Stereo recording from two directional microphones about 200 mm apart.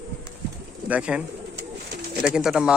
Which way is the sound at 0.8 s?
5° right (ahead or behind).